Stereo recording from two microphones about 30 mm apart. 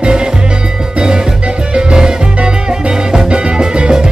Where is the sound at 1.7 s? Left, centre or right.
Right.